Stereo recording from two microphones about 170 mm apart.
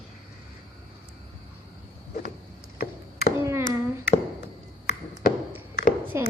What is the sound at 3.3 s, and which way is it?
Hands, 15° right (ahead or behind).